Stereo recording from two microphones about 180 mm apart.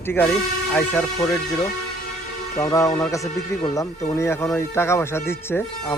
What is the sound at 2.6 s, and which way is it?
Speech, 20° left (ahead or behind).